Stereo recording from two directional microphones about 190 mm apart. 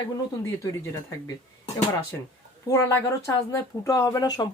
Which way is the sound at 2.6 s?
15° left (ahead or behind).